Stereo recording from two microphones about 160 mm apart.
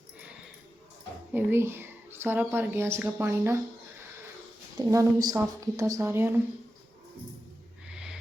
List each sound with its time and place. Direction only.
1.3 s a woman's voice: 10° right (ahead or behind)
4.8 s a woman's voice: 20° right (ahead or behind)
7.9 s a sound: 5° right (ahead or behind)